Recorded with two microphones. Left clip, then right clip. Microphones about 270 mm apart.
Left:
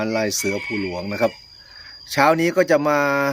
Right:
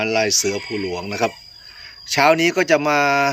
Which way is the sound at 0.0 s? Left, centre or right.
Centre.